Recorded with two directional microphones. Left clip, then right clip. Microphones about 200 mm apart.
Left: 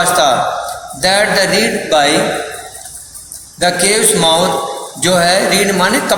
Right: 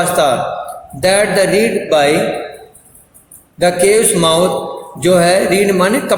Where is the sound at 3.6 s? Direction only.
50° right (ahead or behind).